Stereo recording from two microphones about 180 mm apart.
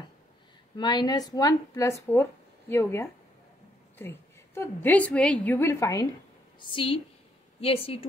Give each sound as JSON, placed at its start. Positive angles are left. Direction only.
{"t": 0.7, "sound": "a woman's voice", "side_deg": 25}
{"t": 6.6, "sound": "speech", "side_deg": 30}